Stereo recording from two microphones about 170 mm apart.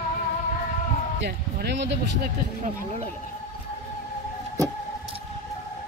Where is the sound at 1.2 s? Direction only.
85° right.